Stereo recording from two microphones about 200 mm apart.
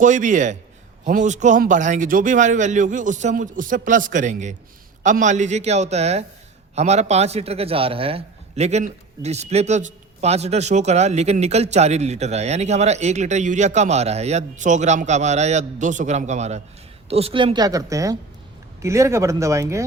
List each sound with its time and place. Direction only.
0.0 s a man's voice: 40° right (ahead or behind); by 19.8 s 15° right (ahead or behind)